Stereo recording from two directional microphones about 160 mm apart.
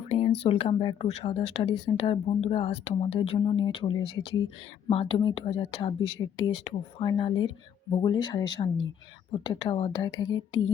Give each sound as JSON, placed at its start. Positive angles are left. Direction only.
{"t": 0.1, "sound": "speech", "side_deg": 40}
{"t": 6.5, "sound": "speech", "side_deg": 35}